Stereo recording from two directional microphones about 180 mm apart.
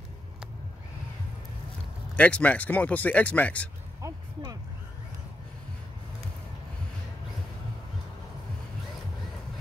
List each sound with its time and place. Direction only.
2.1 s speech: 5° left (ahead or behind)
4.0 s music: 20° right (ahead or behind)